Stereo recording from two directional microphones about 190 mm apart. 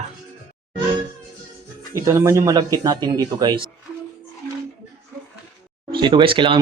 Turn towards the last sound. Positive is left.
turn(degrees=-25)  # may be behind; listen again after turning